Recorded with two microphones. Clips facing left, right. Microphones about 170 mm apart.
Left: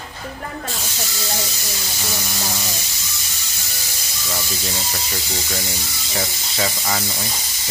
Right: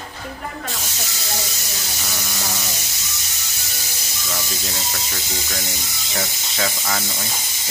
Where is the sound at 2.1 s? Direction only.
15° left (ahead or behind).